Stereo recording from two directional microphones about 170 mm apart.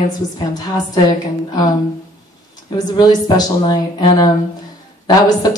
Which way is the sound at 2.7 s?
25° left (ahead or behind).